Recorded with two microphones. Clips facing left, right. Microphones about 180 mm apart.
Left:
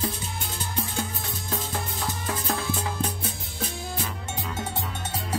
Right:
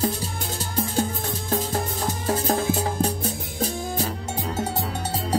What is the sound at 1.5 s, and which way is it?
Music, 45° right (ahead or behind).